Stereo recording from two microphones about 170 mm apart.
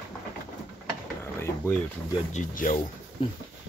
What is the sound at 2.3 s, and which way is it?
Speech, 50° left (ahead or behind).